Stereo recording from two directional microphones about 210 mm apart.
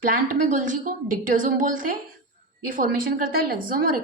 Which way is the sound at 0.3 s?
40° right (ahead or behind).